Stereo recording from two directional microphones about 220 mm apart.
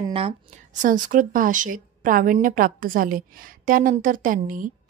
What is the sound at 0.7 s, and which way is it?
Speech, 35° right (ahead or behind).